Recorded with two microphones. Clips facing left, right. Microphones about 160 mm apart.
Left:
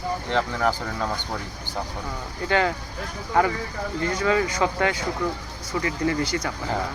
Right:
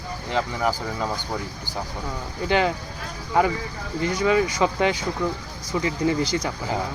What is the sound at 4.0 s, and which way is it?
Speech, 15° right (ahead or behind).